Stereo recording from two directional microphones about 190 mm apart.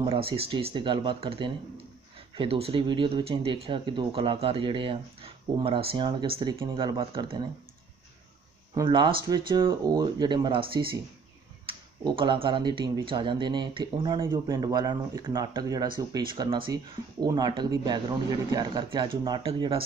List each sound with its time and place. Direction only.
0.0 s speech: 30° right (ahead or behind)
8.7 s speech: 25° right (ahead or behind)